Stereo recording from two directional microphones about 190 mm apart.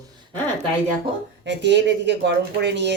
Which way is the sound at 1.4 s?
65° right (ahead or behind).